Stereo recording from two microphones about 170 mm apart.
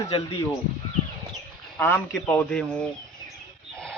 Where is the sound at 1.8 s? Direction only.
15° left (ahead or behind).